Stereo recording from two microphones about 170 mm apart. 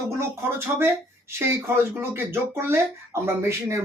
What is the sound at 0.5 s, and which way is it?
Speech, 15° right (ahead or behind).